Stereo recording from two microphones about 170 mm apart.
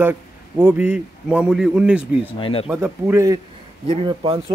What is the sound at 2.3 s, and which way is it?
Speech, 30° left (ahead or behind).